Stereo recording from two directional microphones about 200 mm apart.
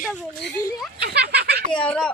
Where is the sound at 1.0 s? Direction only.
50° right (ahead or behind).